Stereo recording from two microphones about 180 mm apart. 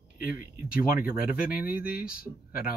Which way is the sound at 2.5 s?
50° left (ahead or behind).